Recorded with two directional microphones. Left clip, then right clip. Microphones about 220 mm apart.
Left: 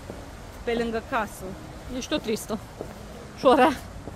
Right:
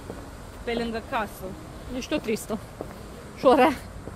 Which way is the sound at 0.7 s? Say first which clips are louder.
Left 2 dB; 40° left (ahead or behind).